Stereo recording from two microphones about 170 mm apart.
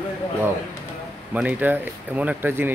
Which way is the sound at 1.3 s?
10° right (ahead or behind).